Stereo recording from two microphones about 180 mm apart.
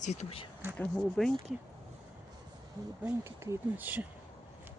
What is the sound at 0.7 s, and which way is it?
Speech, 5° left (ahead or behind).